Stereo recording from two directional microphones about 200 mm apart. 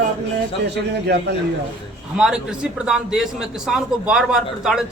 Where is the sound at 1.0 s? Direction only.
55° right (ahead or behind).